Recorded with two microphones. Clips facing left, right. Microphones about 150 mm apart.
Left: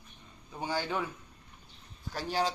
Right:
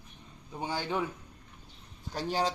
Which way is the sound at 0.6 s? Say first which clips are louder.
Even; 20° right (ahead or behind).